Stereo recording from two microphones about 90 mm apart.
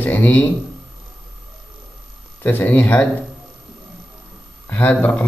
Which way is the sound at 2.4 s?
20° left (ahead or behind).